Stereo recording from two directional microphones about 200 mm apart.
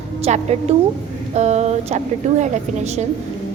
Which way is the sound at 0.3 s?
35° right (ahead or behind).